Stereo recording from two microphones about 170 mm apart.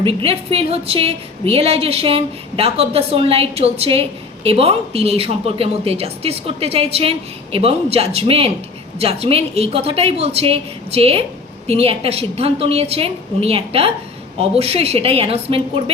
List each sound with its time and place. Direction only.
0.0 s a woman's voice: 35° right (ahead or behind)